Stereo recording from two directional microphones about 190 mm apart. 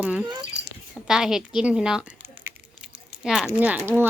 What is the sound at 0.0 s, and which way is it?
Speech, 5° right (ahead or behind).